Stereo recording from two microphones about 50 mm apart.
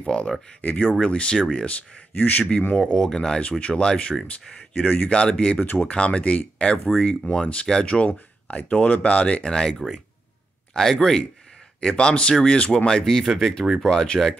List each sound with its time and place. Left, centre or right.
0.0 s speech: left
0.6 s speech: left
1.0 s speech: centre
1.7 s speech: left
2.8 s speech: centre
4.3 s speech: left
5.1 s speech: centre
5.6 s speech: left; by 14.3 s centre